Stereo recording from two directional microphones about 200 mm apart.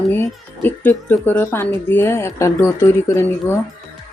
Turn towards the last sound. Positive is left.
turn(degrees=10)  # may be behind; listen again after turning